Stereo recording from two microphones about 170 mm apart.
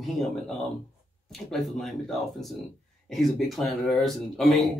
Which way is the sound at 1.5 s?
Centre (ahead or behind).